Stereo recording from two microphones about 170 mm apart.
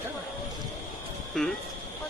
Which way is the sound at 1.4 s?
5° left (ahead or behind).